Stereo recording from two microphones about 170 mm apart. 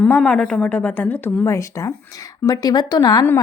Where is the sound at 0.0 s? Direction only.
5° left (ahead or behind).